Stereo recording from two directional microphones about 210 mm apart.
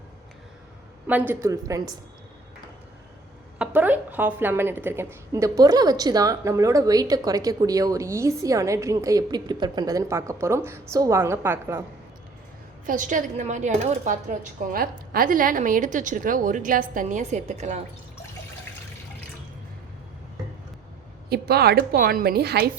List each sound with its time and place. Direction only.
1.0 s a woman's voice: 10° right (ahead or behind)
3.6 s a woman's voice: 10° right (ahead or behind)
12.8 s speech: 40° right (ahead or behind)
21.2 s a woman's voice: 50° right (ahead or behind)